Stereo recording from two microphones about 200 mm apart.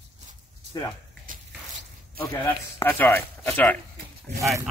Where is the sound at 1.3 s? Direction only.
40° right (ahead or behind).